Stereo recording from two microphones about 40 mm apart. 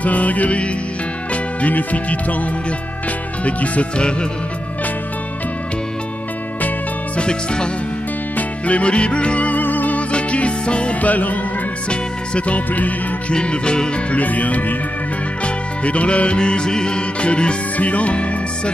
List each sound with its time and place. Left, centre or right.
0.0 s music: left
1.3 s speech: left
3.4 s music: left
7.2 s music: left
8.4 s music: left
9.6 s music: left
10.1 s music: left
13.3 s music: left
14.1 s music: left